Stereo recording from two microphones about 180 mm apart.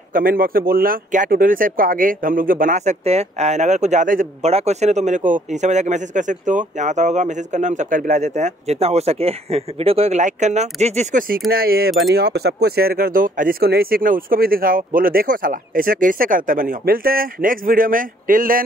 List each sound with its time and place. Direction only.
0.1 s speech: 55° right (ahead or behind)